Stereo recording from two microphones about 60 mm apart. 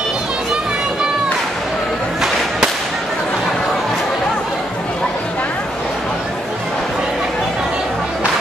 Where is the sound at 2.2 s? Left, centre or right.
Centre.